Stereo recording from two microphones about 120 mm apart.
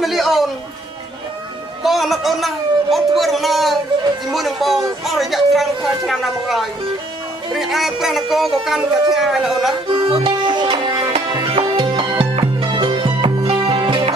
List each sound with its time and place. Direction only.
0.0 s music: centre (ahead or behind)
1.8 s speech: centre (ahead or behind)
9.8 s music: 45° right (ahead or behind)
11.4 s music: 50° right (ahead or behind)